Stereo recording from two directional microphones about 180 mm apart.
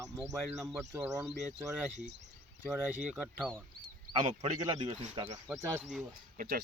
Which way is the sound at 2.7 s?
10° right (ahead or behind).